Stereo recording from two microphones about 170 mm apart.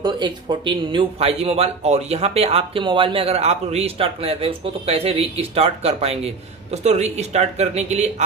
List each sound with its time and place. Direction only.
0.0 s speech: 25° right (ahead or behind)